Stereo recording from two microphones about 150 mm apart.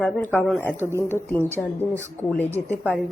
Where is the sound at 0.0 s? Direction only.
10° left (ahead or behind).